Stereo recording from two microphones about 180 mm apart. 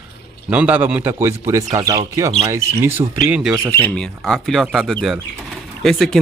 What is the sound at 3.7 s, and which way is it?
Speech, 5° left (ahead or behind).